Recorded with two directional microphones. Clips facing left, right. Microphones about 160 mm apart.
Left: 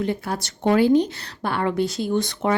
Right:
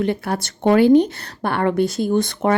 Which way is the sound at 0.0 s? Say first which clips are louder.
Right 4 dB; 65° right (ahead or behind).